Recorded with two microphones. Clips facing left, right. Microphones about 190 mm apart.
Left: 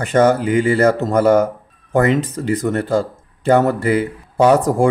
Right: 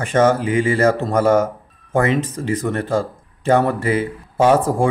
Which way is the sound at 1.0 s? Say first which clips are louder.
Left 2 dB; 40° left (ahead or behind).